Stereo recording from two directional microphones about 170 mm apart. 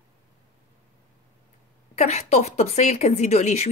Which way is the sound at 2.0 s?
40° left (ahead or behind).